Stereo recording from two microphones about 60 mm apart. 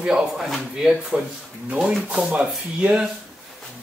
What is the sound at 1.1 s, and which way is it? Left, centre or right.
Speech, right.